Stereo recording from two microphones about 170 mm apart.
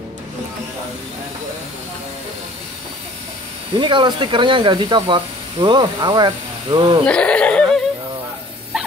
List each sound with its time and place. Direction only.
3.7 s speech: 30° right (ahead or behind)
7.1 s speech: 5° left (ahead or behind)
8.7 s dog: 5° right (ahead or behind)